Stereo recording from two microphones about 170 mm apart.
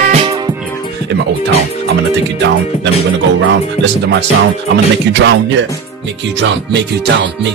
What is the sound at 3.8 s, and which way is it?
Speech, 80° right.